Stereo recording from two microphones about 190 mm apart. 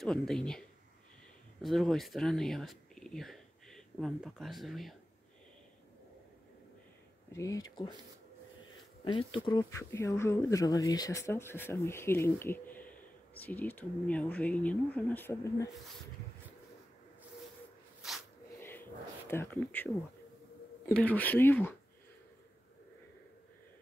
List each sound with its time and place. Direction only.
0.0 s speech: 5° left (ahead or behind)
7.3 s speech: 15° left (ahead or behind)
9.0 s speech: 25° left (ahead or behind)
18.0 s squish: centre (ahead or behind)
18.6 s a sound: 10° left (ahead or behind)
20.8 s speech: 10° left (ahead or behind)